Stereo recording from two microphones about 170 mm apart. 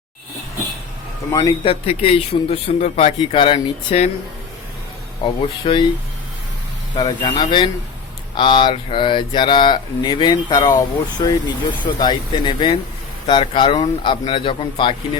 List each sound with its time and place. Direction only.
1.3 s a man's voice: 20° left (ahead or behind)
5.7 s a man's voice: 30° left (ahead or behind)
6.9 s speech: 25° left (ahead or behind)